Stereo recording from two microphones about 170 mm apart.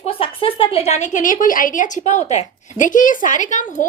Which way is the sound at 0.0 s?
35° left (ahead or behind).